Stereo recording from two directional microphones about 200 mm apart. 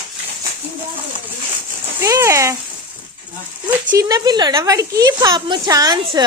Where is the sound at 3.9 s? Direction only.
15° right (ahead or behind).